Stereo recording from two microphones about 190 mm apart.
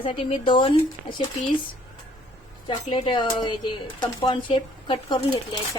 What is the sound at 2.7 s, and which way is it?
A woman's voice, 25° left (ahead or behind).